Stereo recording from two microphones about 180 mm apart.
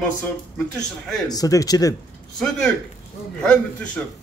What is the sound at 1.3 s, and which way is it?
Speech, 20° left (ahead or behind).